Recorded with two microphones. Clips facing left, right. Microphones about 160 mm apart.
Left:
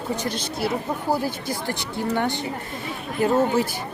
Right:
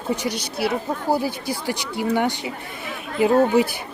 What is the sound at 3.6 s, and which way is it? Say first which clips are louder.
Speech: right 4 dB; 15° right (ahead or behind).